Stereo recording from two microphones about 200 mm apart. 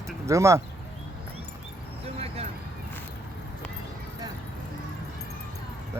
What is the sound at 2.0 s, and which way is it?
Vehicle, 30° right (ahead or behind).